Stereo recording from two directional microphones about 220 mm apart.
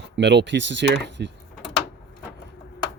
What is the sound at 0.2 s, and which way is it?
Speech, 50° right (ahead or behind).